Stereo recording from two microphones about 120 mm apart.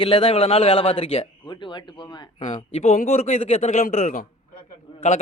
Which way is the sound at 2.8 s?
80° left.